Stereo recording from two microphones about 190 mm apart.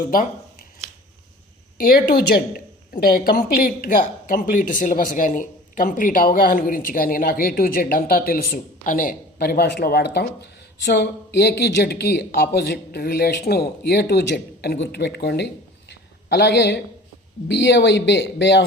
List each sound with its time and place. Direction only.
1.8 s speech: 50° left (ahead or behind)
15.9 s a sound: 65° left (ahead or behind)
17.5 s speech: 65° left (ahead or behind)